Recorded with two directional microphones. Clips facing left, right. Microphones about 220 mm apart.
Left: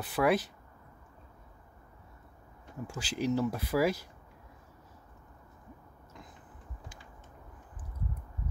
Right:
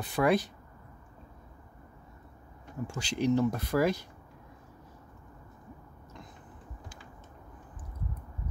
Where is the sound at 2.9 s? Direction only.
5° left (ahead or behind).